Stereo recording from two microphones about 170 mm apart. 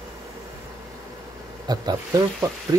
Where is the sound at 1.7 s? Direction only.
25° right (ahead or behind).